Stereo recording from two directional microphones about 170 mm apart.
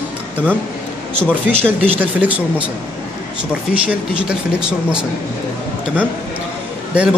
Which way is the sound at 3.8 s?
5° right (ahead or behind).